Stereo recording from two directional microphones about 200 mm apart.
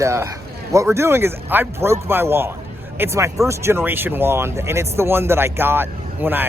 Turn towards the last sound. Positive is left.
turn(degrees=-10)  # may be behind; listen again after turning